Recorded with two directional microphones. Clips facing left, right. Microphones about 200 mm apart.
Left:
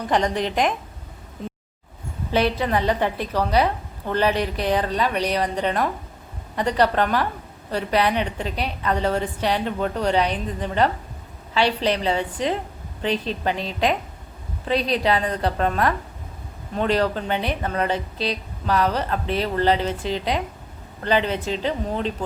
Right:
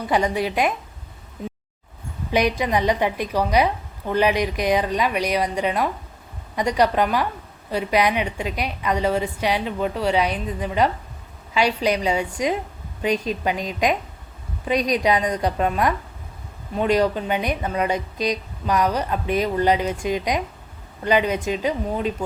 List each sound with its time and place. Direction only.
0.0 s speech: 10° right (ahead or behind)
2.3 s speech: 15° right (ahead or behind)